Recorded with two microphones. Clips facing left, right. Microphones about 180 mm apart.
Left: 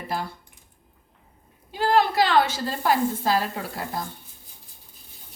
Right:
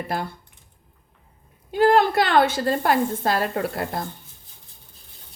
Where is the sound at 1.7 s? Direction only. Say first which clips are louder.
Right 4 dB; 55° right (ahead or behind).